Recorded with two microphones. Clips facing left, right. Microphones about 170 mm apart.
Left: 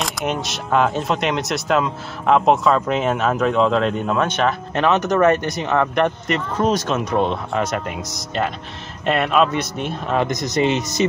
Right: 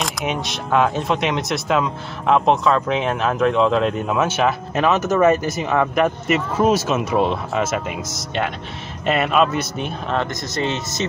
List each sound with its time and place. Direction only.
0.0 s speech: centre (ahead or behind)
10.2 s speech: 15° left (ahead or behind)